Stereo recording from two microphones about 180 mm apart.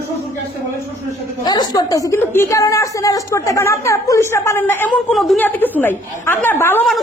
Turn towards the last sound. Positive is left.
turn(degrees=10)  # may be behind; listen again after turning